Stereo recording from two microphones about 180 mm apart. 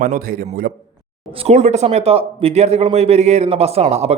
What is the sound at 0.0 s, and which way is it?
Speech, 55° right (ahead or behind).